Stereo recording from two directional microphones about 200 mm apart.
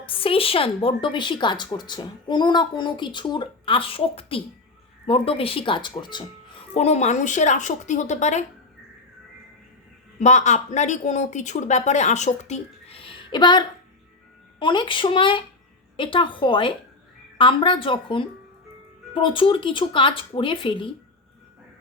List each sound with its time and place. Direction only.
0.0 s a woman's voice: 25° left (ahead or behind)
10.2 s a woman's voice: 35° left (ahead or behind)